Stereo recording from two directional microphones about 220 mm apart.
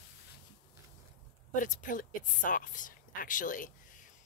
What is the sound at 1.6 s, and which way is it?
Speech, 35° left (ahead or behind).